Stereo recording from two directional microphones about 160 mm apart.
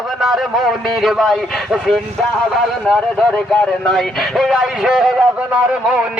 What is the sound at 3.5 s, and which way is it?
A man's voice, 5° left (ahead or behind).